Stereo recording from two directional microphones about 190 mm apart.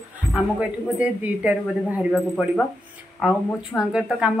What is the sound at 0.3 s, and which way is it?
A woman's voice, 5° right (ahead or behind).